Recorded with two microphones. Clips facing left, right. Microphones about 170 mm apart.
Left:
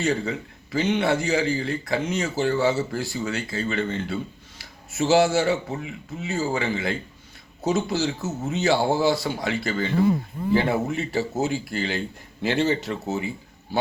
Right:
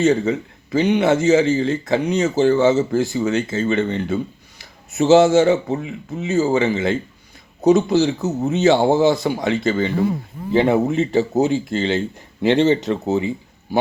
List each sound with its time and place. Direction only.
0.0 s speech: 20° right (ahead or behind)